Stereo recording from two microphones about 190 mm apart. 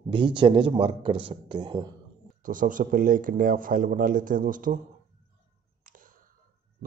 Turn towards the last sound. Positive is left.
turn(degrees=-45)  # may be behind; listen again after turning